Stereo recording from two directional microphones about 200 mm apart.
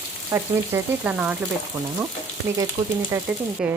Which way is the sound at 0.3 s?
10° right (ahead or behind).